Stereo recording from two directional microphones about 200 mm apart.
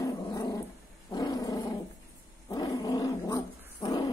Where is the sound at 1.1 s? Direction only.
20° left (ahead or behind).